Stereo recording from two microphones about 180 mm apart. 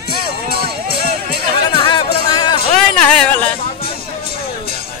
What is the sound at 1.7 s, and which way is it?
Music, 25° left (ahead or behind).